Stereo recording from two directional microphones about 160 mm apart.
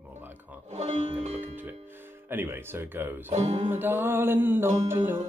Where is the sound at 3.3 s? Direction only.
45° right (ahead or behind).